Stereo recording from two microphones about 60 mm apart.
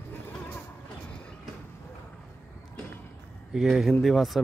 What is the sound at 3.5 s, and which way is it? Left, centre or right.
Speech, centre.